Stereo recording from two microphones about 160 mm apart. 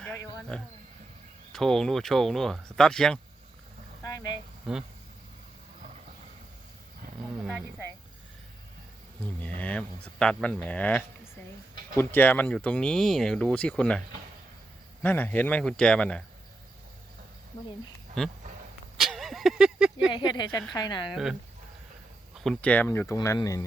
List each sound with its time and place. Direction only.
0.0 s a sound: 5° left (ahead or behind)
1.5 s speech: centre (ahead or behind)
4.0 s vehicle: 20° left (ahead or behind)
4.7 s speech: 5° right (ahead or behind)
7.3 s speech: 5° right (ahead or behind)
9.6 s speech: 5° left (ahead or behind)
15.0 s speech: 10° left (ahead or behind)
18.2 s speech: 5° left (ahead or behind)
18.9 s a sound: centre (ahead or behind)
20.1 s speech: 25° left (ahead or behind)
22.4 s speech: 5° left (ahead or behind); by 23.6 s 20° left (ahead or behind)